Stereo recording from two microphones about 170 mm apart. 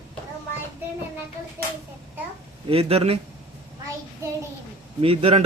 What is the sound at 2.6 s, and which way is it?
Speech, 35° right (ahead or behind).